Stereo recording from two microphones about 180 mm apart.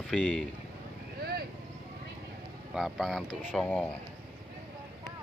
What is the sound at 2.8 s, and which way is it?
Speech, centre (ahead or behind).